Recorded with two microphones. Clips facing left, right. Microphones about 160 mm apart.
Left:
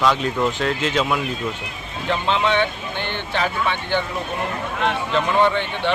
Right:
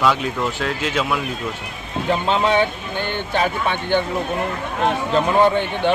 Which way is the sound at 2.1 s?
40° right (ahead or behind).